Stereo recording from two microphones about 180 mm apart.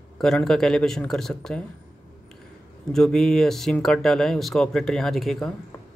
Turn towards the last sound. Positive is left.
turn(degrees=0)  # may be behind; listen again after turning